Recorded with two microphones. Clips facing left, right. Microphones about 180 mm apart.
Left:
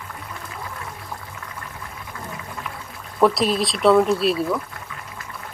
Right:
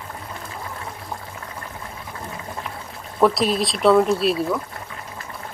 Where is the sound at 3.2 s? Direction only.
Centre (ahead or behind).